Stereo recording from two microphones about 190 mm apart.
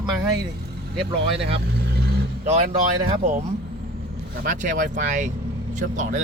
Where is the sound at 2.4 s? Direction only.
35° right (ahead or behind).